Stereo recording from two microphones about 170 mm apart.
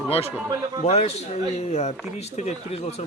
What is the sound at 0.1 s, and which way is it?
Speech, 35° left (ahead or behind).